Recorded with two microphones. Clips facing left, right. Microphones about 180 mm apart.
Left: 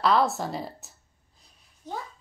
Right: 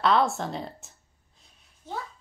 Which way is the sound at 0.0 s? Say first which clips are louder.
Even; centre (ahead or behind).